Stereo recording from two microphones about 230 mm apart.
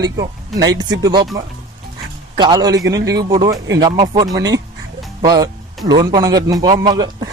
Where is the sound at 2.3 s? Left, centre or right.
Centre.